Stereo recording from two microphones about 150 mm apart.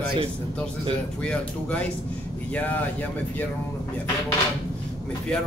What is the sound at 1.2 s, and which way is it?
Speech, 5° left (ahead or behind).